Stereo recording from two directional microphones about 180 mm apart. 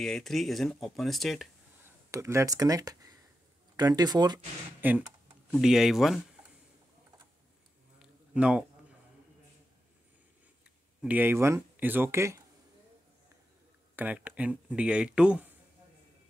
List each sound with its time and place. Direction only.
0.0 s speech: centre (ahead or behind)
1.9 s speech: 15° right (ahead or behind)
4.8 s speech: 10° right (ahead or behind)
8.0 s a sound: 5° right (ahead or behind)
11.0 s speech: 10° right (ahead or behind)
13.9 s speech: 10° right (ahead or behind)